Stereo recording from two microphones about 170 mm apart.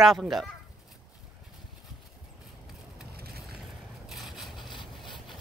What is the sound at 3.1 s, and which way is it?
Vehicle, 65° right (ahead or behind).